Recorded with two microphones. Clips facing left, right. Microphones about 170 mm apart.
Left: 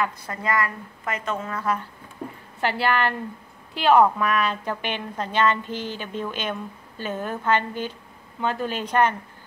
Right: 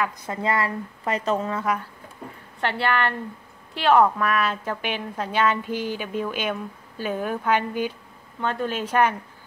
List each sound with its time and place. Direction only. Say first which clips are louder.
0.3 s speech: right 4 dB; 25° right (ahead or behind)
1.5 s a woman's voice: right 1 dB; 15° right (ahead or behind)
2.6 s a woman's voice: left 1 dB; 5° left (ahead or behind)
8.4 s a woman's voice: even; 5° left (ahead or behind)